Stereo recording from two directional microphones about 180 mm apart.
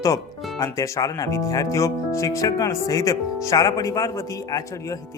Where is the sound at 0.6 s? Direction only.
20° left (ahead or behind).